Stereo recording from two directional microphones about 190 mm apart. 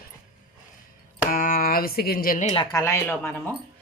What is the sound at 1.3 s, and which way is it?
Speech, 50° left (ahead or behind).